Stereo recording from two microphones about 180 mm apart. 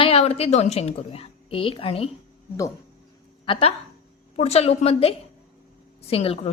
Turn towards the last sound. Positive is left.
turn(degrees=30)  # may be behind; listen again after turning